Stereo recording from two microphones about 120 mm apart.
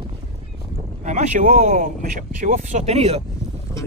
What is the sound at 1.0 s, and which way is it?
Speech, 85° right.